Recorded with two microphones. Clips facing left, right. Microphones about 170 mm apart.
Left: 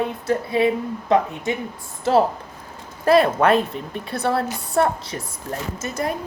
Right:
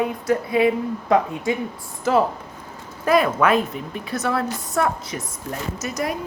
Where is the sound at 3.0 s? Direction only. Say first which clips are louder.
Left 2 dB; 35° left (ahead or behind).